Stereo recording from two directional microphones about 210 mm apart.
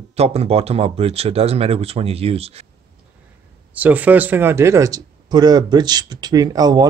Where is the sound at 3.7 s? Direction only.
5° right (ahead or behind).